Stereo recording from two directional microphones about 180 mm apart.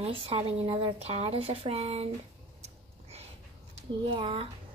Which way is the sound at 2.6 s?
35° right (ahead or behind).